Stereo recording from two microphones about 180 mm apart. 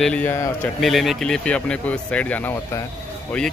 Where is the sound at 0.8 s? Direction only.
Centre (ahead or behind).